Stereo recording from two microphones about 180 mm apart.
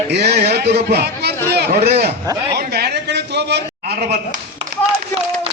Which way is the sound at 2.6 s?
65° right (ahead or behind).